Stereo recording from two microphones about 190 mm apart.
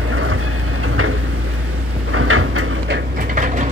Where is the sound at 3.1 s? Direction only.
45° right (ahead or behind).